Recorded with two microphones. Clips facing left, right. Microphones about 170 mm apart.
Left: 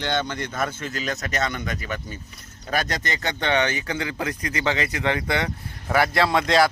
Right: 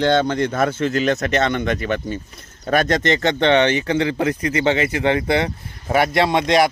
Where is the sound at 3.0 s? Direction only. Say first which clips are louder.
Right 10 dB; 25° right (ahead or behind).